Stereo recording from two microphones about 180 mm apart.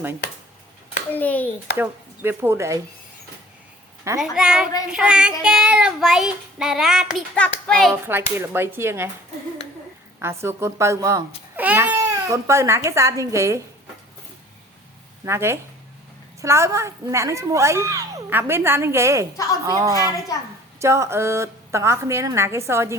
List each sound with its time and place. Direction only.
1.1 s a child's voice: 10° left (ahead or behind)
1.7 s a woman's voice: 10° right (ahead or behind)
4.2 s child singing: 5° right (ahead or behind)
8.0 s a woman's voice: 10° right (ahead or behind)
10.2 s a woman's voice: 15° right (ahead or behind)
15.2 s a woman's voice: 15° right (ahead or behind)